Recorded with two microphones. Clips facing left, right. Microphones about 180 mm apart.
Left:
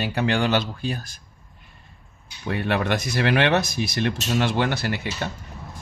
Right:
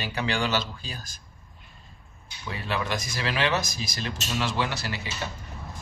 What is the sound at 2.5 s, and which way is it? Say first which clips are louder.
Speech: left 7 dB; 60° left (ahead or behind).